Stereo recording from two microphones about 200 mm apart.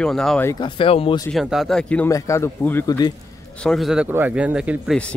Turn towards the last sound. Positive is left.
turn(degrees=-5)  # may be behind; listen again after turning